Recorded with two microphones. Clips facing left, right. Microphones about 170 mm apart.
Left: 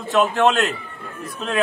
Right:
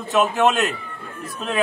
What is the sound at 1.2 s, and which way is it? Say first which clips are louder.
Speech: left 1 dB; centre (ahead or behind).